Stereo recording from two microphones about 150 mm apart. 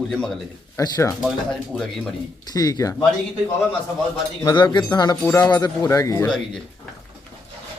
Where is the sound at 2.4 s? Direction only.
25° left (ahead or behind).